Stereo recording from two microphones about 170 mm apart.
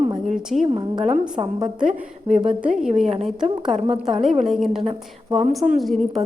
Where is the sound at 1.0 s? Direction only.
40° right (ahead or behind).